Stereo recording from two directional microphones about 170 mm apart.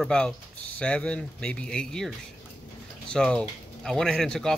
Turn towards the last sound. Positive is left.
turn(degrees=5)  # may be behind; listen again after turning